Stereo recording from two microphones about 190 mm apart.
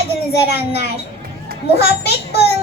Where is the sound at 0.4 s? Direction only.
60° left (ahead or behind).